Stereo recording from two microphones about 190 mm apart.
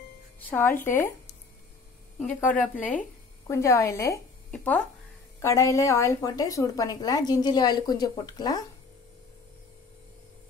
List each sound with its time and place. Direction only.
0.5 s speech: 10° left (ahead or behind)
2.1 s a woman's voice: 5° left (ahead or behind)